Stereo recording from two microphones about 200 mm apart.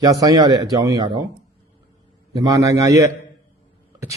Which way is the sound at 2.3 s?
15° right (ahead or behind).